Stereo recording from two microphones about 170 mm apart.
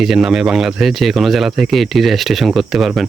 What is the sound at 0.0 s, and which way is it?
Speech, centre (ahead or behind).